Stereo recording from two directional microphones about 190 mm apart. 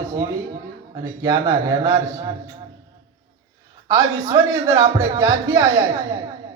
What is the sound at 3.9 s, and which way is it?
Speech, 15° right (ahead or behind).